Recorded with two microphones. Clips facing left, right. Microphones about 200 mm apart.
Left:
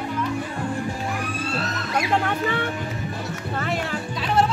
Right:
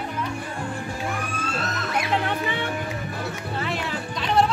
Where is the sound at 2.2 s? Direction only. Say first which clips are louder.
Left 2 dB; 45° left (ahead or behind).